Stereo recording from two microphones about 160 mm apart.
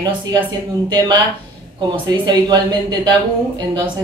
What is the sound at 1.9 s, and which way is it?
Speech, 30° right (ahead or behind).